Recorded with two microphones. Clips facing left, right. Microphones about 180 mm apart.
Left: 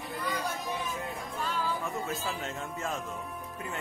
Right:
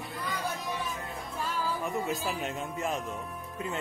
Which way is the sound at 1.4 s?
10° right (ahead or behind).